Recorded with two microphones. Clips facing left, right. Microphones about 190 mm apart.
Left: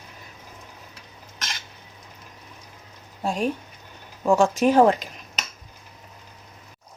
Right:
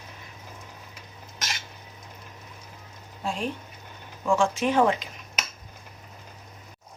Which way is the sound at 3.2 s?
40° left (ahead or behind).